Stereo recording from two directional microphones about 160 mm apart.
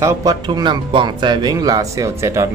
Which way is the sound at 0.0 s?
20° right (ahead or behind).